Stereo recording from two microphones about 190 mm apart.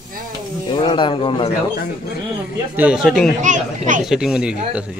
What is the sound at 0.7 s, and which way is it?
Speech, 25° left (ahead or behind).